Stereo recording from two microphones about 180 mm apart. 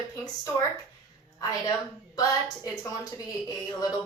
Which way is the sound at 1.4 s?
20° left (ahead or behind).